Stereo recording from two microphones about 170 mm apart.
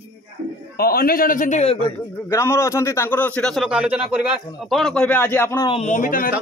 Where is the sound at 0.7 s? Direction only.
60° left (ahead or behind); by 1.8 s 45° left (ahead or behind).